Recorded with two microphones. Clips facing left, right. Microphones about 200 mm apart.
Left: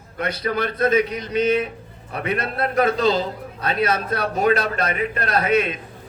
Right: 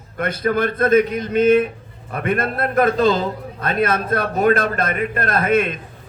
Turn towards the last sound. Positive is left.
turn(degrees=-50)  # may be behind; listen again after turning